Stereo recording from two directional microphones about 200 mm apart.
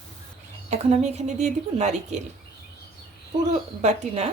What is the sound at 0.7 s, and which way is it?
Speech, 35° right (ahead or behind).